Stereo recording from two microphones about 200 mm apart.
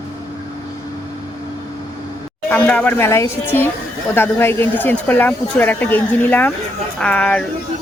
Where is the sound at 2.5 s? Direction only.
10° left (ahead or behind).